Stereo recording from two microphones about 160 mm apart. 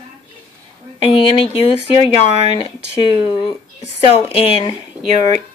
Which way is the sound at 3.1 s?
35° left (ahead or behind).